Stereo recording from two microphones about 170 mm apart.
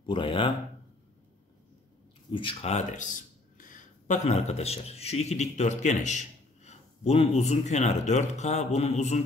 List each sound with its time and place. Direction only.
0.0 s speech: 30° left (ahead or behind)
2.3 s speech: 35° left (ahead or behind)